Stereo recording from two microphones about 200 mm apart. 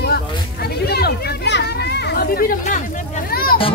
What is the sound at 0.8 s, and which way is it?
Children playing, 55° left (ahead or behind).